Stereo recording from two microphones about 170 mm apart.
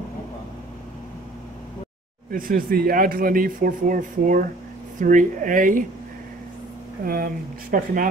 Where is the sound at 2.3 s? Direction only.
55° right (ahead or behind).